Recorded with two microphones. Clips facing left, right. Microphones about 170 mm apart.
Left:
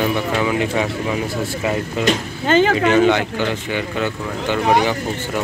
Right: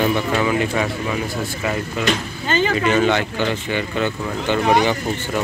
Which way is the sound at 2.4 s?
75° left (ahead or behind).